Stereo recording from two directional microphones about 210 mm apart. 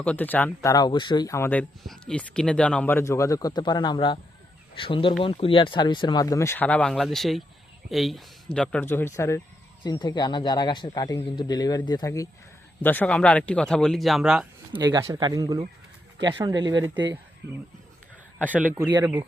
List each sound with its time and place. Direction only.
0.0 s speech: 5° left (ahead or behind)
14.7 s speech: 20° right (ahead or behind)
18.5 s speech: 10° right (ahead or behind)